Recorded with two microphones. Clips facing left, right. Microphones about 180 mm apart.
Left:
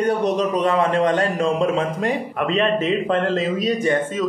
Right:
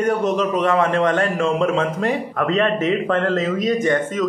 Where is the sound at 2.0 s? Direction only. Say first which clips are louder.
Right 1 dB; 15° left (ahead or behind).